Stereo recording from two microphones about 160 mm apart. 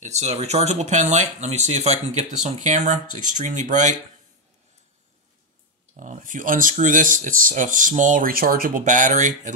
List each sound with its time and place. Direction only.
0.0 s speech: 45° right (ahead or behind)
5.9 s speech: 55° right (ahead or behind)